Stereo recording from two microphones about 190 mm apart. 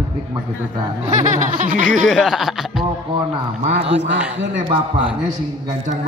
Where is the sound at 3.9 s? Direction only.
70° right (ahead or behind).